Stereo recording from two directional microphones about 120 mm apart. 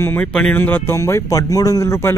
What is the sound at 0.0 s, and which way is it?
Speech, 15° left (ahead or behind).